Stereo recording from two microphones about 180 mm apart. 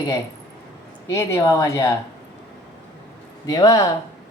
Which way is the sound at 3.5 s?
20° left (ahead or behind).